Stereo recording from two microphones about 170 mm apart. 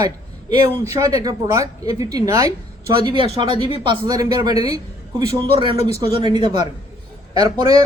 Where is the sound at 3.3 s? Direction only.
30° right (ahead or behind).